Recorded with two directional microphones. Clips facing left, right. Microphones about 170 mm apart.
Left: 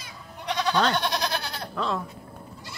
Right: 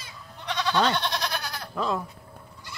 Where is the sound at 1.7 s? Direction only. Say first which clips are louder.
Right 1 dB; 5° right (ahead or behind).